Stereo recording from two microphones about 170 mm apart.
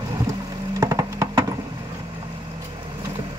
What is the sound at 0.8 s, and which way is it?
Music, 20° right (ahead or behind).